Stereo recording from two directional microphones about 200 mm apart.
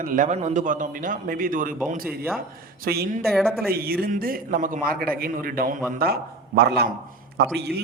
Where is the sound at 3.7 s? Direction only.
50° right (ahead or behind).